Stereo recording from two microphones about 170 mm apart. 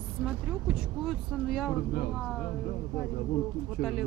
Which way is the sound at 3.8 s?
5° right (ahead or behind).